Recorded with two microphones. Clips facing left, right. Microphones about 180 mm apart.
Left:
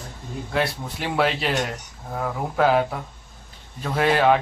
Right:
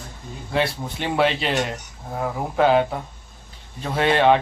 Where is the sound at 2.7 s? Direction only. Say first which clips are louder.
Right 2 dB; 25° right (ahead or behind).